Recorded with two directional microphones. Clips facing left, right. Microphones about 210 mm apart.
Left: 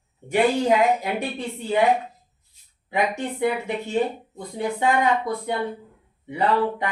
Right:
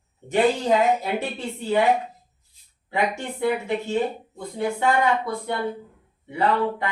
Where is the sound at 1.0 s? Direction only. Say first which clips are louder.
Even; 15° left (ahead or behind).